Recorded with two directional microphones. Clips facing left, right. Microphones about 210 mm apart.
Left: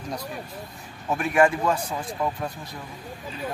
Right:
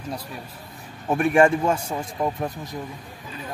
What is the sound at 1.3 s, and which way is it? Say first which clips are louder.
Speech: right 2 dB; 30° right (ahead or behind).